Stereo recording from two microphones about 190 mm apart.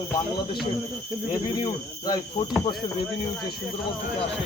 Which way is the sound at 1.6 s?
20° left (ahead or behind).